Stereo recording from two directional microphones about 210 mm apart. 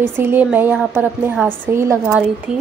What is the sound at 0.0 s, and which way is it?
A woman's voice, 10° right (ahead or behind).